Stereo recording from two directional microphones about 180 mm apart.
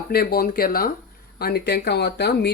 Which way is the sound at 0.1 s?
60° left (ahead or behind).